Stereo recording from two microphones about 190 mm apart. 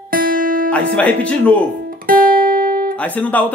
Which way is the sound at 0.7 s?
5° left (ahead or behind).